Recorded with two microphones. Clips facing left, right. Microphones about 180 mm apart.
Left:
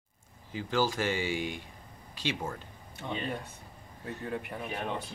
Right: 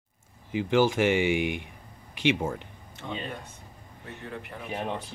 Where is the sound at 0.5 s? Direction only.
20° right (ahead or behind).